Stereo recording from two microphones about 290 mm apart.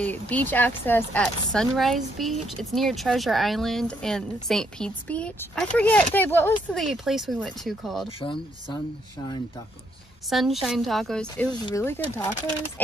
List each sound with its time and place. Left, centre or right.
0.0 s speech: centre
8.2 s speech: centre
10.3 s speech: centre